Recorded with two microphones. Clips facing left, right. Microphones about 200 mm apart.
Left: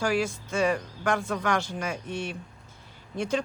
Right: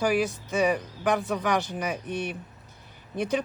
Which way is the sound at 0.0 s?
20° right (ahead or behind).